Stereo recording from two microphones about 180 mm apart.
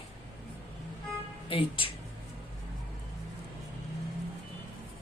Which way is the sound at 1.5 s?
30° left (ahead or behind).